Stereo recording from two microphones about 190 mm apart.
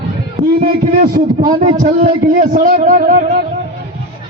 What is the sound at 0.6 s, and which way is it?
A man's voice, 50° right (ahead or behind).